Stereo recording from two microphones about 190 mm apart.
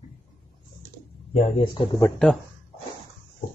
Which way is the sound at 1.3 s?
30° left (ahead or behind).